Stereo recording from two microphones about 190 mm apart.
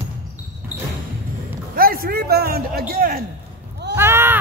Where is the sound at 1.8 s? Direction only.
50° right (ahead or behind).